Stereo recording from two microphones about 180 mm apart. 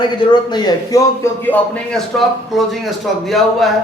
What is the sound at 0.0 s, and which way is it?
A man's voice, 25° left (ahead or behind).